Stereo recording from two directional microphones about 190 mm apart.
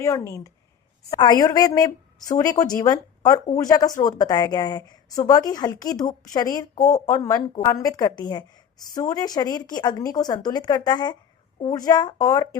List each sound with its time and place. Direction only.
0.0 s a woman's voice: 15° left (ahead or behind)